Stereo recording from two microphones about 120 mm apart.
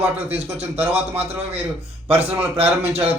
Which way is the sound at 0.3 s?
60° right (ahead or behind).